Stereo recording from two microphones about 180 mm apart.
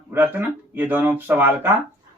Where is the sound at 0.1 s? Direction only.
10° right (ahead or behind).